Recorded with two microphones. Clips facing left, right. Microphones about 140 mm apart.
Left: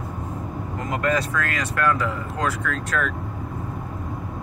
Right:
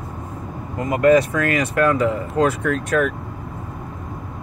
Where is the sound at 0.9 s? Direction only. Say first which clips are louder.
Right 9 dB; 20° right (ahead or behind).